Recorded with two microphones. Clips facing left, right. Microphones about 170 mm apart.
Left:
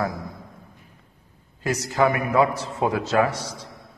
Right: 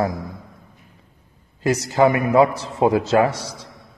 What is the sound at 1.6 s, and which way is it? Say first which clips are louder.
A man's voice: right 5 dB; 30° right (ahead or behind).